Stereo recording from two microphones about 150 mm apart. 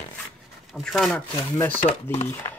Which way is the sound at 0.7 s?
Centre (ahead or behind).